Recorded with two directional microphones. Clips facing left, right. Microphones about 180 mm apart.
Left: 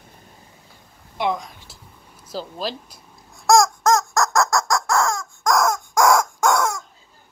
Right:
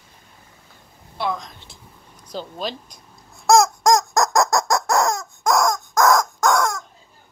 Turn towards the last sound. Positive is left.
turn(degrees=10)  # may be behind; listen again after turning